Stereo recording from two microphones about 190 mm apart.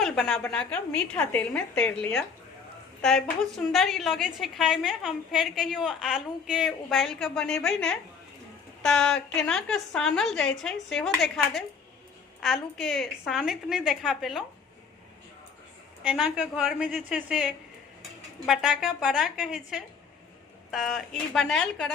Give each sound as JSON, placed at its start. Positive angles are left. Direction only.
{"t": 0.0, "sound": "a woman's voice", "side_deg": 0}
{"t": 16.0, "sound": "a woman's voice", "side_deg": -5}